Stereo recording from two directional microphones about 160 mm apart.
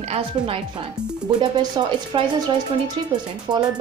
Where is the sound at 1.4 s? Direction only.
25° right (ahead or behind).